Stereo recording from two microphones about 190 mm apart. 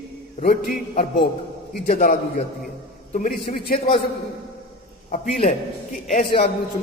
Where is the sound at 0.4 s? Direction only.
40° left (ahead or behind).